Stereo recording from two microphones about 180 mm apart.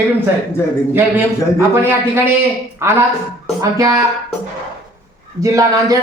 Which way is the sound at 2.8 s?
15° right (ahead or behind).